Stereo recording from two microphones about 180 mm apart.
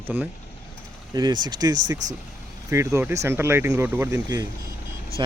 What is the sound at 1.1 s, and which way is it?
Speech, 25° right (ahead or behind).